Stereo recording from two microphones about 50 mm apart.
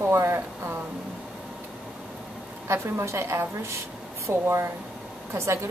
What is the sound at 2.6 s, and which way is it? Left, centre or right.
A woman's voice, right.